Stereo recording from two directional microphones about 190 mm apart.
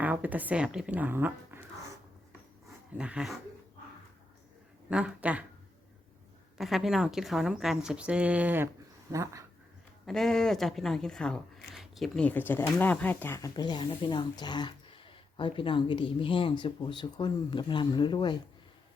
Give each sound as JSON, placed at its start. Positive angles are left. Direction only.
{"t": 0.0, "sound": "speech", "side_deg": -10}
{"t": 2.6, "sound": "speech", "side_deg": -5}
{"t": 4.9, "sound": "speech", "side_deg": -5}
{"t": 6.6, "sound": "a woman's voice", "side_deg": 0}
{"t": 10.1, "sound": "speech", "side_deg": 0}